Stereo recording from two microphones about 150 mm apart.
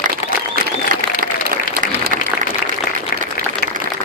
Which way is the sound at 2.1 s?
60° right (ahead or behind).